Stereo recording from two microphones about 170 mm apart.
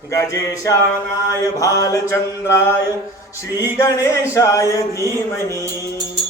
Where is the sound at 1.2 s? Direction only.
20° left (ahead or behind).